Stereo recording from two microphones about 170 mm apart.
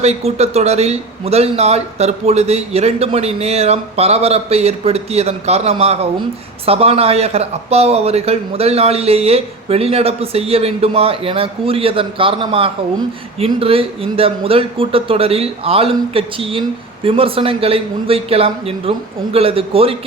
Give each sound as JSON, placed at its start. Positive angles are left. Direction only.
{"t": 0.0, "sound": "a man's voice", "side_deg": -40}